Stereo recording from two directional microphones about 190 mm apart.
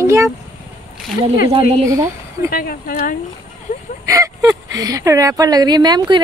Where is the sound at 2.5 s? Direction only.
50° left (ahead or behind).